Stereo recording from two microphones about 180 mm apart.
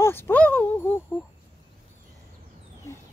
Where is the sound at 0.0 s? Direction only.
10° left (ahead or behind).